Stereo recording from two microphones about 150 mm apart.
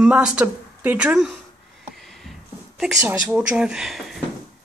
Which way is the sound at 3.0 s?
10° right (ahead or behind).